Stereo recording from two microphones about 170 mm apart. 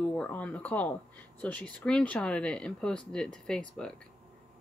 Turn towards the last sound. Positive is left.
turn(degrees=5)  # may be behind; listen again after turning